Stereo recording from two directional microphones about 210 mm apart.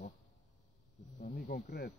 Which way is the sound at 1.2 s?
40° left (ahead or behind).